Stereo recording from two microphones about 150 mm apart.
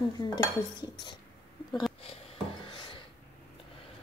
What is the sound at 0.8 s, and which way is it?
Speech, 30° left (ahead or behind).